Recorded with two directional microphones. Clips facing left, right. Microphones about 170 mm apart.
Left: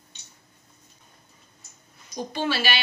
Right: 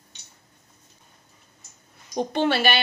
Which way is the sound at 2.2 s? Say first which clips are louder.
Right 5 dB; 60° right (ahead or behind).